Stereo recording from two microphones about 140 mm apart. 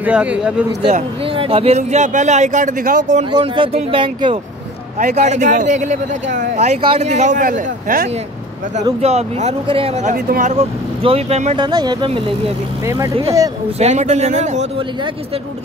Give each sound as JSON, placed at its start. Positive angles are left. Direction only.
{"t": 0.0, "sound": "speech", "side_deg": -10}
{"t": 0.8, "sound": "speech", "side_deg": -45}
{"t": 3.3, "sound": "speech", "side_deg": -35}
{"t": 4.9, "sound": "speech", "side_deg": -60}
{"t": 9.0, "sound": "speech", "side_deg": -50}
{"t": 10.0, "sound": "speech", "side_deg": -75}
{"t": 10.5, "sound": "speech", "side_deg": -45}
{"t": 11.5, "sound": "speech", "side_deg": -30}
{"t": 13.7, "sound": "speech", "side_deg": -55}